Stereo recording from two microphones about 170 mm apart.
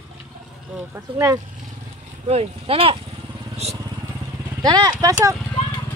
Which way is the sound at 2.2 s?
35° right (ahead or behind).